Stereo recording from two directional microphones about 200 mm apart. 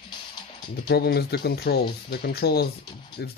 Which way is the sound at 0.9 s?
50° left (ahead or behind).